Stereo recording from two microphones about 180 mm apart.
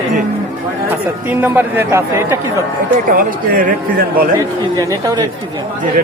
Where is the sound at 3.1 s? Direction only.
50° right (ahead or behind).